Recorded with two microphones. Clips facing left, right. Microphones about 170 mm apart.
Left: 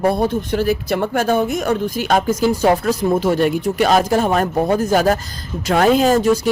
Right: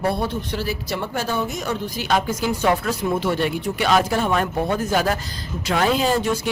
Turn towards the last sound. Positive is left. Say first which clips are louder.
# left 7 dB
turn(degrees=45)  # may be behind; listen again after turning